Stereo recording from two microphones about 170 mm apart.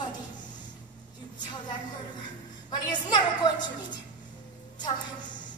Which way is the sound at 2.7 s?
25° left (ahead or behind).